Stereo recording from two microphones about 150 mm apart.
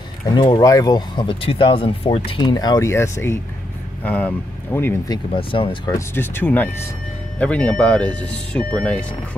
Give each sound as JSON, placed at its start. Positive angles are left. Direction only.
{"t": 0.3, "sound": "speech", "side_deg": 30}
{"t": 5.1, "sound": "speech", "side_deg": 35}
{"t": 5.9, "sound": "speech", "side_deg": 15}